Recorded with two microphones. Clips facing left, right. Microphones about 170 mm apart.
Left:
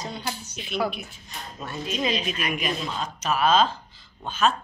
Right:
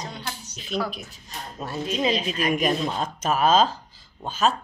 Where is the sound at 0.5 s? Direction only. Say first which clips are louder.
Even; 35° right (ahead or behind).